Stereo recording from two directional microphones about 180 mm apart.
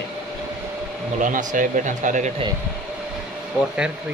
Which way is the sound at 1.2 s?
45° right (ahead or behind).